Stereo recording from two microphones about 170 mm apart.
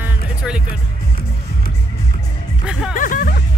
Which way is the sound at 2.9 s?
50° left (ahead or behind).